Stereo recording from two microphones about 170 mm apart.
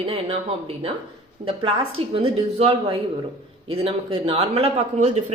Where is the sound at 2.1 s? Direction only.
35° right (ahead or behind).